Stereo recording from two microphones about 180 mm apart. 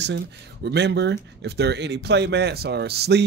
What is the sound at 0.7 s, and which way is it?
Speech, 70° right (ahead or behind).